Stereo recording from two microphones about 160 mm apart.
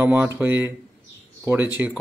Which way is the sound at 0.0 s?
5° right (ahead or behind).